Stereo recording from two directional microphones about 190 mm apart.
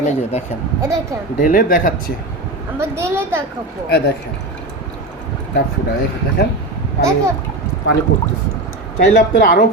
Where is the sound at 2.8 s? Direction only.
15° right (ahead or behind).